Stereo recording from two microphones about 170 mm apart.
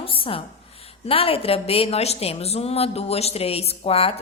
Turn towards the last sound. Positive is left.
turn(degrees=35)  # may be behind; listen again after turning